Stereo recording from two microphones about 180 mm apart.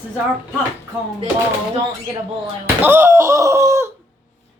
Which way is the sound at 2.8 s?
10° right (ahead or behind).